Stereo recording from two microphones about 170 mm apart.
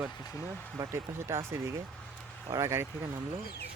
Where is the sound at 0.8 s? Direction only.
15° right (ahead or behind).